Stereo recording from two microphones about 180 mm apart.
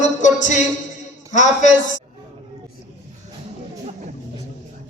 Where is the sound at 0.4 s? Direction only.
45° left (ahead or behind).